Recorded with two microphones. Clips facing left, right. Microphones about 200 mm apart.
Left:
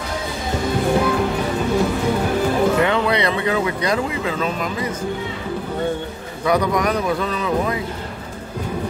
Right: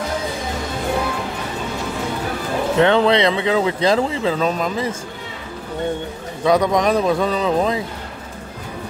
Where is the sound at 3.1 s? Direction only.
20° right (ahead or behind).